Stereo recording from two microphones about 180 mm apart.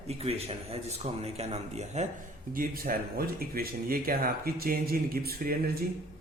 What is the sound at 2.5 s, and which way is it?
Speech, 50° right (ahead or behind).